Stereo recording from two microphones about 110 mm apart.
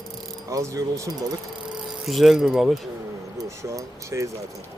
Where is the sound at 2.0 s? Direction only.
Centre (ahead or behind).